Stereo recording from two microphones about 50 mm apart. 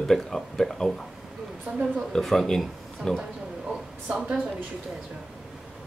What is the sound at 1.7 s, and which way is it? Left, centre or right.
Speech, right.